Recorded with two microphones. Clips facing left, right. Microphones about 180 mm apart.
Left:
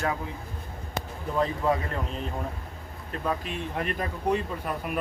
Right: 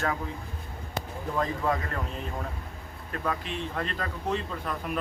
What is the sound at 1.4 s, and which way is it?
Speech, 25° left (ahead or behind).